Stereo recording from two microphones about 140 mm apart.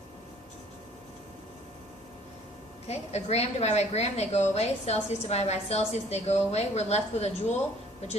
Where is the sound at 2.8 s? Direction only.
50° left (ahead or behind).